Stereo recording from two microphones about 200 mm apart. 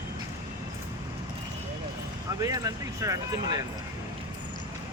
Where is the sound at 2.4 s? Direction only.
15° right (ahead or behind).